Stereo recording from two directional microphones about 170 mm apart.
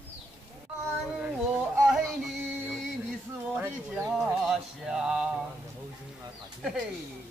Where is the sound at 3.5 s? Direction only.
10° right (ahead or behind).